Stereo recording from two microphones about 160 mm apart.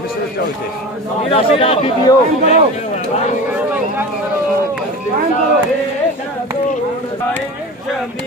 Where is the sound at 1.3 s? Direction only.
35° left (ahead or behind).